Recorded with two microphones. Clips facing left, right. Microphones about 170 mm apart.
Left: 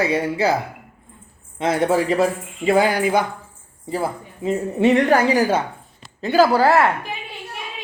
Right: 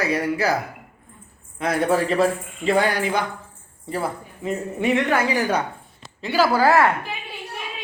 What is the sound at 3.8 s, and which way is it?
Speech, 25° left (ahead or behind).